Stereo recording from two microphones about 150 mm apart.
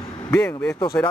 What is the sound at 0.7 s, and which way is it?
Speech, 25° left (ahead or behind).